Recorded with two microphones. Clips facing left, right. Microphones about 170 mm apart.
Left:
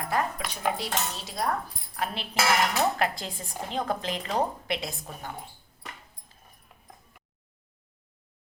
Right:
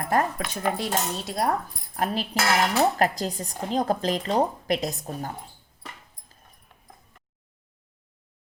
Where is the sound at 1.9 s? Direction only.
40° right (ahead or behind).